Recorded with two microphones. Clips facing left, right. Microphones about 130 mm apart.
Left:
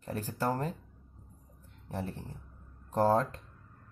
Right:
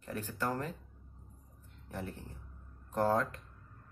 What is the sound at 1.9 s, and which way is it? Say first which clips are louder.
Speech: left 4 dB; 35° left (ahead or behind).